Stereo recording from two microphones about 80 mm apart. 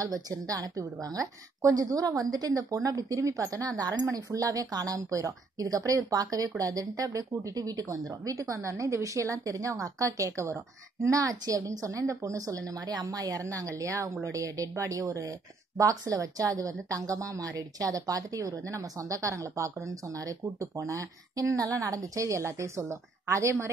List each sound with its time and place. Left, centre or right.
0.0 s a woman's voice: right